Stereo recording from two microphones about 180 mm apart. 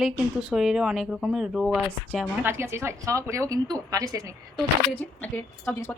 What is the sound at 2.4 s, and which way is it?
A woman's voice, 15° right (ahead or behind).